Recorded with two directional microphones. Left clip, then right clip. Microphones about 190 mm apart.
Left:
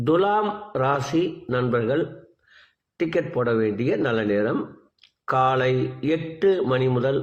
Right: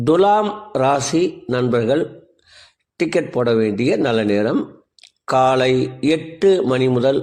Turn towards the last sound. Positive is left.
turn(degrees=-40)  # may be behind; listen again after turning